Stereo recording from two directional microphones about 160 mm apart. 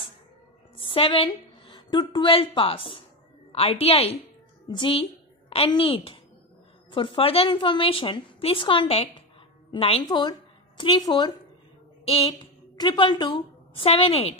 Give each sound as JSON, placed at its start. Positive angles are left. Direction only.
{"t": 0.7, "sound": "a woman's voice", "side_deg": 35}
{"t": 10.0, "sound": "a woman's voice", "side_deg": 25}
{"t": 12.0, "sound": "a woman's voice", "side_deg": 35}